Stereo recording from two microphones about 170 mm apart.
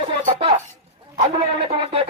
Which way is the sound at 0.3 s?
40° right (ahead or behind).